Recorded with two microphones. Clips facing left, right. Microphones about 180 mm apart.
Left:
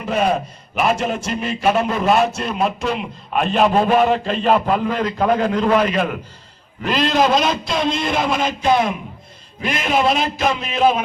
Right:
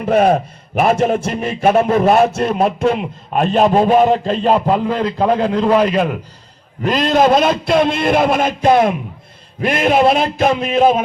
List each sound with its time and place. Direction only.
0.0 s a man's voice: 50° right (ahead or behind); by 6.1 s 30° right (ahead or behind)
6.8 s a man's voice: 45° right (ahead or behind)